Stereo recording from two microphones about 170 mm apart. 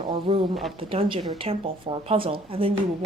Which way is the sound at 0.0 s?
30° right (ahead or behind).